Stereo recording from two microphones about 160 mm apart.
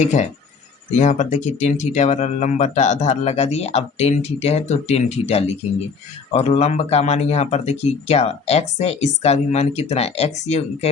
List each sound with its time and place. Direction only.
0.0 s speech: 45° left (ahead or behind)